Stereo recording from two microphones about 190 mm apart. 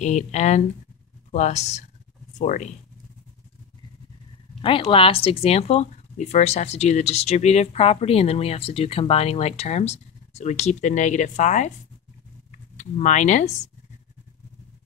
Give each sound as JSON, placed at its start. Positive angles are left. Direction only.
{"t": 0.0, "sound": "speech", "side_deg": 35}
{"t": 4.6, "sound": "speech", "side_deg": 30}